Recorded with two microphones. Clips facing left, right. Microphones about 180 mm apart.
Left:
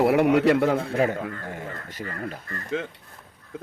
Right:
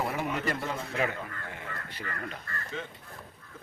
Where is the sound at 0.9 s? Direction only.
40° left (ahead or behind).